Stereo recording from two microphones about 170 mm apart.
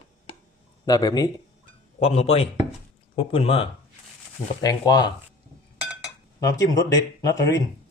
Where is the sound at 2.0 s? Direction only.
35° left (ahead or behind).